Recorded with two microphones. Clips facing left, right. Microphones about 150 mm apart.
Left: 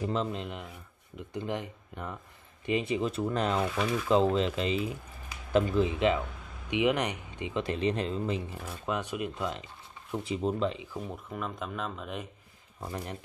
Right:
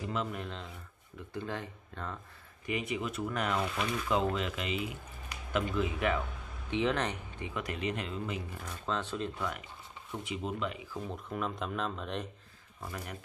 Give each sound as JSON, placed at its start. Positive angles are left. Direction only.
{"t": 0.1, "sound": "speech", "side_deg": 30}
{"t": 0.4, "sound": "speech", "side_deg": 15}
{"t": 2.6, "sound": "speech", "side_deg": 30}
{"t": 3.7, "sound": "speech", "side_deg": 5}
{"t": 4.1, "sound": "speech", "side_deg": 30}
{"t": 8.6, "sound": "speech", "side_deg": 15}
{"t": 10.1, "sound": "speech", "side_deg": 35}
{"t": 11.0, "sound": "speech", "side_deg": 0}
{"t": 12.8, "sound": "speech", "side_deg": 30}